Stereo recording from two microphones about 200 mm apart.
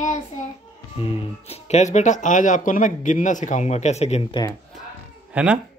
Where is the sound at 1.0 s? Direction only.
30° left (ahead or behind).